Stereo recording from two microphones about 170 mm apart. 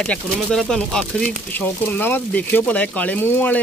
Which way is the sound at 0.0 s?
5° left (ahead or behind).